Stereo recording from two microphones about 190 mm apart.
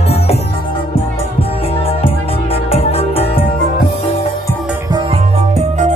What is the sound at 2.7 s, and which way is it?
Music, 30° left (ahead or behind).